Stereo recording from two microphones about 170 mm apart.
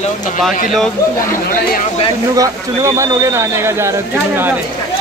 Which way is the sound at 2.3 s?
20° right (ahead or behind).